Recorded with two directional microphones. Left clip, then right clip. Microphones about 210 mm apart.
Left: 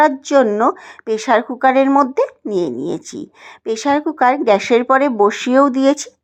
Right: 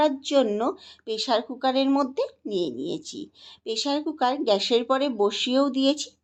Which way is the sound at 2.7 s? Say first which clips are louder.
Left 9 dB; 80° left.